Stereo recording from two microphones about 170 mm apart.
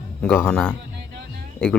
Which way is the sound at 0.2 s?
5° left (ahead or behind).